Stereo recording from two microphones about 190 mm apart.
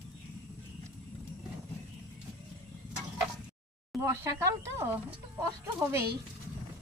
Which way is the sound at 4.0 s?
15° right (ahead or behind).